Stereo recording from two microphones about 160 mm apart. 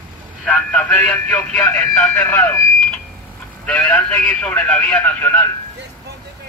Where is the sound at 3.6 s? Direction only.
5° left (ahead or behind).